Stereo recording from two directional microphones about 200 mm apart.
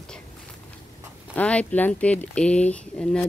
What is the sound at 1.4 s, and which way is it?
Speech, 5° left (ahead or behind).